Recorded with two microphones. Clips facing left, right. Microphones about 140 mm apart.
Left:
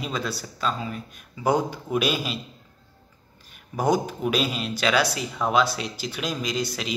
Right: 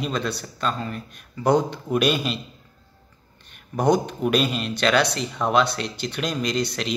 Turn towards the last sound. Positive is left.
turn(degrees=5)  # may be behind; listen again after turning